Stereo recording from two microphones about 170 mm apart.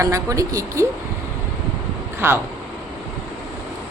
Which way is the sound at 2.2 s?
15° right (ahead or behind).